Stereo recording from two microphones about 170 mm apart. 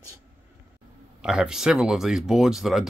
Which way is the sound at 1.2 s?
5° right (ahead or behind).